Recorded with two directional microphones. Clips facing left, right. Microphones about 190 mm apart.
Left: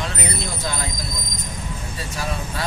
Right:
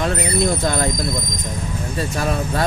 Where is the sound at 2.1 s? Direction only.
55° right (ahead or behind).